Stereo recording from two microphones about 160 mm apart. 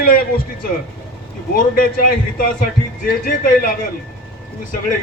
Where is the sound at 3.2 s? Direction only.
60° left (ahead or behind).